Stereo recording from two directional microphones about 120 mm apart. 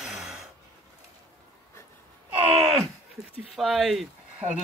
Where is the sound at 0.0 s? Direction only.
5° right (ahead or behind).